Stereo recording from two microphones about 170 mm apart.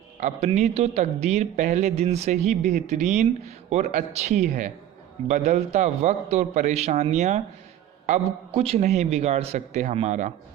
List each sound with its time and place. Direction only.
0.2 s a man's voice: 40° right (ahead or behind)